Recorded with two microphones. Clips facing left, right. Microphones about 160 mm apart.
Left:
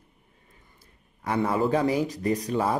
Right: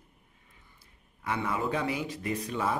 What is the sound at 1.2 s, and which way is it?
Speech, 40° left (ahead or behind).